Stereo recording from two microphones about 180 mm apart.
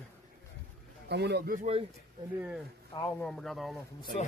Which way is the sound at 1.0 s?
65° right (ahead or behind).